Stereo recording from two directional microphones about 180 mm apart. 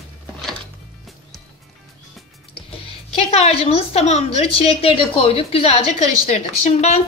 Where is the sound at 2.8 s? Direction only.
35° left (ahead or behind).